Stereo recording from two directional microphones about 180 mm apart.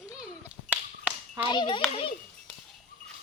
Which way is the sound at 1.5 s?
25° left (ahead or behind).